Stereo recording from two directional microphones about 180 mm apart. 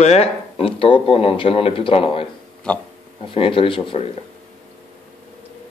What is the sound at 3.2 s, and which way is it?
Speech, 30° left (ahead or behind).